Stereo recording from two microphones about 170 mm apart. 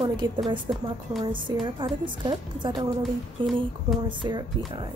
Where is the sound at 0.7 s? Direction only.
25° right (ahead or behind).